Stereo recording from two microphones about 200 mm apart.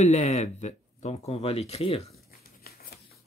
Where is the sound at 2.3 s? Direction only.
50° left (ahead or behind).